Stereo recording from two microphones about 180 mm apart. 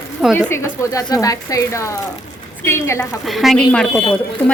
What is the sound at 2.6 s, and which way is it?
Speech, 15° left (ahead or behind).